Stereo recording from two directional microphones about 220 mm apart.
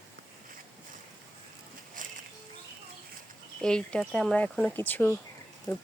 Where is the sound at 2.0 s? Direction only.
35° right (ahead or behind).